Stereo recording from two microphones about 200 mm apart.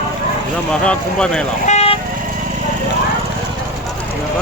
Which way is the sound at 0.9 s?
5° left (ahead or behind).